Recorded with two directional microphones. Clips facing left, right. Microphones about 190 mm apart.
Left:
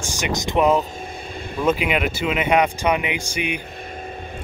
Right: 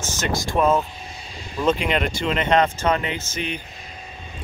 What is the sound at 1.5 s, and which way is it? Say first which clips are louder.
Speech: left 1 dB; 5° left (ahead or behind).